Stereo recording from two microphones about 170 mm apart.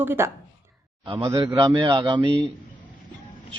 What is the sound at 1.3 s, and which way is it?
A man's voice, 25° right (ahead or behind).